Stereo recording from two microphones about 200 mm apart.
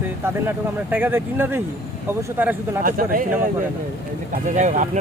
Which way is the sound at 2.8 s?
45° right (ahead or behind).